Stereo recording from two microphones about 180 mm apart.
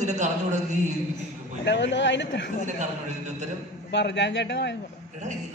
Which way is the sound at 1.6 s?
75° left (ahead or behind).